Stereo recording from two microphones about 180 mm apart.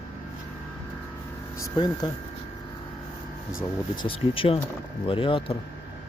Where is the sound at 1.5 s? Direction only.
25° left (ahead or behind).